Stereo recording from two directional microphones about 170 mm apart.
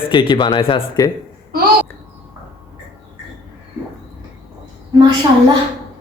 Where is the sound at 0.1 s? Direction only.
25° left (ahead or behind).